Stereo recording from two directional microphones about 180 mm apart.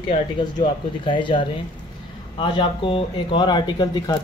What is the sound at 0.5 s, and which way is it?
Speech, 25° left (ahead or behind).